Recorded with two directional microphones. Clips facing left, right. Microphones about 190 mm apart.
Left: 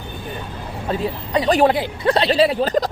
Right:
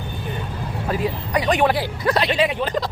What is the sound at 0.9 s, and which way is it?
Speech, 25° left (ahead or behind).